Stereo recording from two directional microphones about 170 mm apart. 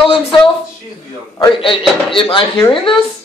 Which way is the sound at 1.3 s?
25° left (ahead or behind).